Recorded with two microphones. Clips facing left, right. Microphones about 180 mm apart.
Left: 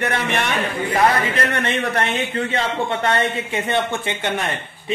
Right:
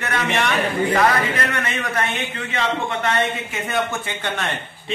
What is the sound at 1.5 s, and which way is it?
A man's voice, 30° left (ahead or behind).